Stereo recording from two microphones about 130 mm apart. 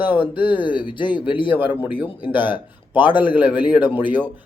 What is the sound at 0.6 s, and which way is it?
Speech, 40° left (ahead or behind).